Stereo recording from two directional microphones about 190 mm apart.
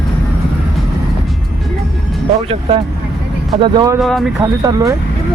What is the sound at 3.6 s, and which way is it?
Speech, 20° right (ahead or behind).